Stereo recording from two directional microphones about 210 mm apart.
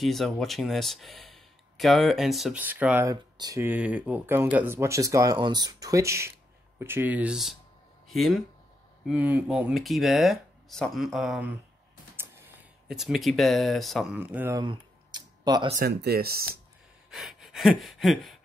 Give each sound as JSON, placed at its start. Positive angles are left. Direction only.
{"t": 0.0, "sound": "speech", "side_deg": 0}
{"t": 14.6, "sound": "a sound", "side_deg": -20}
{"t": 15.7, "sound": "speech", "side_deg": -50}
{"t": 17.1, "sound": "gasp", "side_deg": 0}